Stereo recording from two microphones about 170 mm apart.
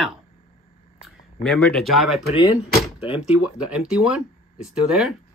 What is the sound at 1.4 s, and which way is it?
Speech, 5° left (ahead or behind).